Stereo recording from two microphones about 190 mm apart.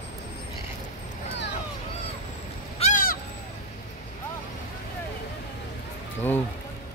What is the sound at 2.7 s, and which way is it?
Crow, 35° left (ahead or behind).